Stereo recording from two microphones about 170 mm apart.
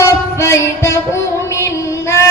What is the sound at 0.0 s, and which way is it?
Music, 15° left (ahead or behind).